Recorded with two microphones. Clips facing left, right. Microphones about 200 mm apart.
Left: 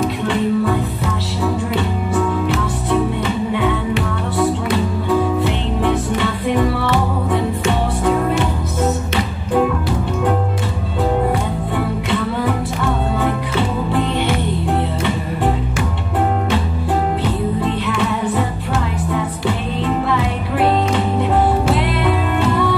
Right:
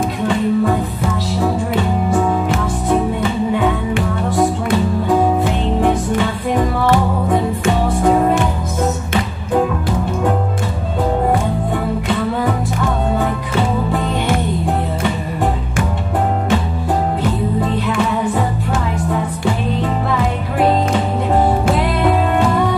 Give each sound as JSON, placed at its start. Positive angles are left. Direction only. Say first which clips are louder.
{"t": 0.0, "sound": "music", "louder": "right 1 dB", "side_deg": -45}
{"t": 5.4, "sound": "music", "louder": "right 2 dB", "side_deg": -45}
{"t": 13.6, "sound": "music", "louder": "right 2 dB", "side_deg": -45}
{"t": 21.7, "sound": "music", "louder": "right 2 dB", "side_deg": -45}